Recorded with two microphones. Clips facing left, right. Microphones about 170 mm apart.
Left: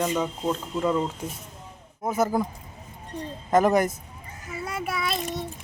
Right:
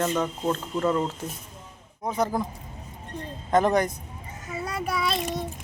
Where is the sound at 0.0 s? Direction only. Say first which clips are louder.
Even; 10° left (ahead or behind).